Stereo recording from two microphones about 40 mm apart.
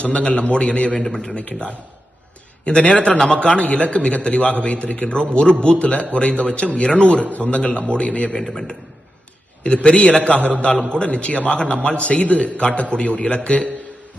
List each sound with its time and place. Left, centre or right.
0.0 s a man's voice: left
1.0 s a man's voice: centre
1.3 s a man's voice: left
9.6 s a man's voice: left